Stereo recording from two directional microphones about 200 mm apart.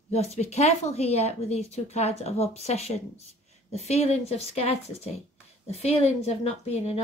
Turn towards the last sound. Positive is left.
turn(degrees=30)  # may be behind; listen again after turning